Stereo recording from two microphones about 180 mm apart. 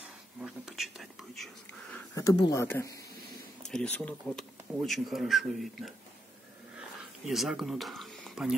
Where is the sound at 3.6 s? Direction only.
5° left (ahead or behind).